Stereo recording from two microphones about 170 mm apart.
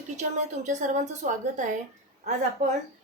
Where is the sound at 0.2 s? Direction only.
45° right (ahead or behind).